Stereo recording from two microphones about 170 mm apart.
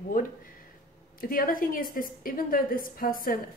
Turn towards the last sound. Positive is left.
turn(degrees=55)  # may be behind; listen again after turning